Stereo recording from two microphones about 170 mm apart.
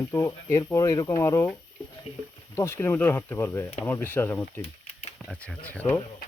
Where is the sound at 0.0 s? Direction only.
15° left (ahead or behind).